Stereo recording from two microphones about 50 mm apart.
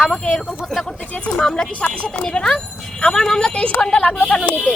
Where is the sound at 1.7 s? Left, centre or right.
Left.